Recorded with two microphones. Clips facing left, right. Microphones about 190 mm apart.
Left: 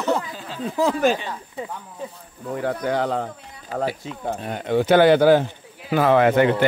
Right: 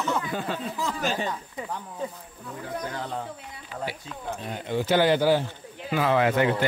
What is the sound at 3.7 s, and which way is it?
Speech, 75° left (ahead or behind).